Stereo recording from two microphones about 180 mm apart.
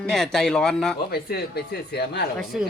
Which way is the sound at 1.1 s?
60° left (ahead or behind).